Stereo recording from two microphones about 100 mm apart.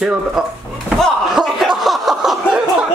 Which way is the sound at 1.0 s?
Centre (ahead or behind).